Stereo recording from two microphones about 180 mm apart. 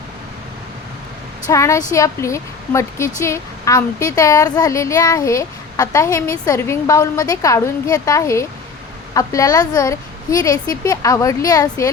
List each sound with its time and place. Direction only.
1.5 s a woman's voice: 15° left (ahead or behind)